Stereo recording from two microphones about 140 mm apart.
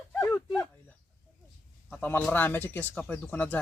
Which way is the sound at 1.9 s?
10° left (ahead or behind).